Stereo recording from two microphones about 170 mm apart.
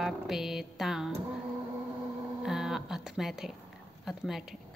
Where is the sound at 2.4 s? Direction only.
5° right (ahead or behind).